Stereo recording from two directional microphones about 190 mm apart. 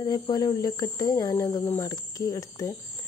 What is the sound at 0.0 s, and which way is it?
Speech, 20° left (ahead or behind).